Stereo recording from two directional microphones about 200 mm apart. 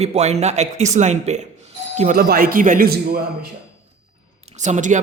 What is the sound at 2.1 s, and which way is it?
A man's voice, 50° right (ahead or behind).